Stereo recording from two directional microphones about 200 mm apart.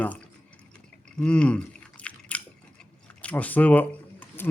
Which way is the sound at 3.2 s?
5° left (ahead or behind).